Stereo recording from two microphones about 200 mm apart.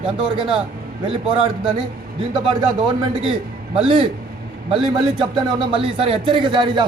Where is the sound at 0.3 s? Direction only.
25° right (ahead or behind).